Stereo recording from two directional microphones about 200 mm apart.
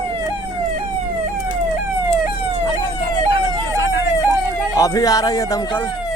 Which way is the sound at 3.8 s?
65° left (ahead or behind).